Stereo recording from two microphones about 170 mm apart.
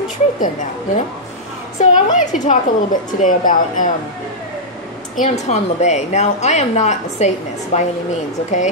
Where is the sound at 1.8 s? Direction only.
45° left (ahead or behind).